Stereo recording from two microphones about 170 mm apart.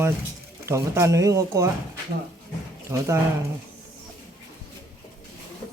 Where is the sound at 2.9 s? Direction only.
15° right (ahead or behind).